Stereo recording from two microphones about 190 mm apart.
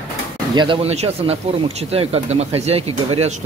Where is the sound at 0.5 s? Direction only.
25° right (ahead or behind).